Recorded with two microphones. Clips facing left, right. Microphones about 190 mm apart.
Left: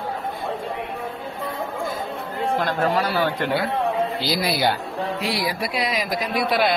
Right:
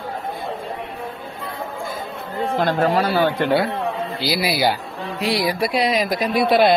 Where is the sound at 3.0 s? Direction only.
30° right (ahead or behind).